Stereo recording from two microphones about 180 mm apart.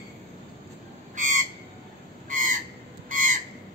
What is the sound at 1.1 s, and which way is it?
Frog, 45° right (ahead or behind).